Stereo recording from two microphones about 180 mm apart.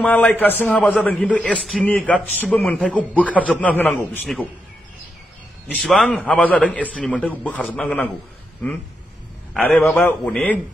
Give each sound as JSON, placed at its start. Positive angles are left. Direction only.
{"t": 0.0, "sound": "a man's voice", "side_deg": 5}
{"t": 5.7, "sound": "a man's voice", "side_deg": 0}
{"t": 9.5, "sound": "a man's voice", "side_deg": 5}